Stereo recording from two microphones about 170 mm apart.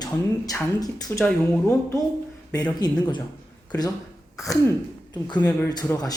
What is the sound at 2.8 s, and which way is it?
Speech, 25° left (ahead or behind).